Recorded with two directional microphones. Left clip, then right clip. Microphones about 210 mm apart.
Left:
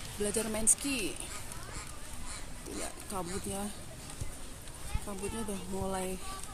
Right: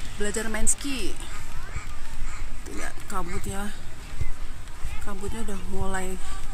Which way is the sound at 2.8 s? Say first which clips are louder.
Right 7 dB; 5° right (ahead or behind).